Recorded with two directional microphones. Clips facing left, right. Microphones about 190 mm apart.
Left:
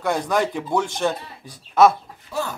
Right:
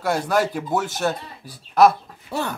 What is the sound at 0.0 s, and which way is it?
Speech, 5° right (ahead or behind).